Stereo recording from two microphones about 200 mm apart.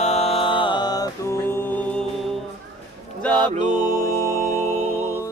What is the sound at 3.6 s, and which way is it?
Music, 20° left (ahead or behind).